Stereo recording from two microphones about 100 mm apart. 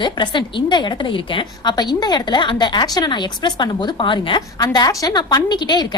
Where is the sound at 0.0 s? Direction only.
50° left (ahead or behind).